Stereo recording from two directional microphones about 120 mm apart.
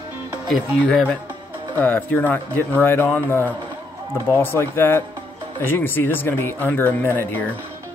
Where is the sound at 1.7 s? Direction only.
15° left (ahead or behind).